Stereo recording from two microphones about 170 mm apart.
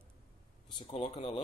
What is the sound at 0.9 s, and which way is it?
Speech, 45° left (ahead or behind).